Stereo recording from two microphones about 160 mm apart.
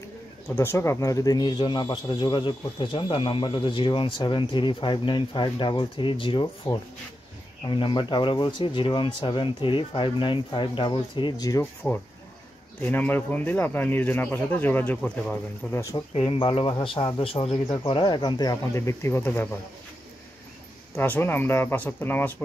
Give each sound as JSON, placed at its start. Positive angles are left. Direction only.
{"t": 0.5, "sound": "speech", "side_deg": 15}
{"t": 11.6, "sound": "speech", "side_deg": 10}
{"t": 16.1, "sound": "speech", "side_deg": 35}
{"t": 20.9, "sound": "speech", "side_deg": 10}